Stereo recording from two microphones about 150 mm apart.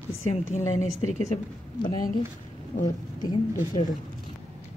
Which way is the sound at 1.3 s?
40° left (ahead or behind).